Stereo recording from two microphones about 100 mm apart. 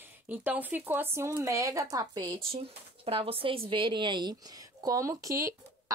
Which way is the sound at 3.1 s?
70° right (ahead or behind).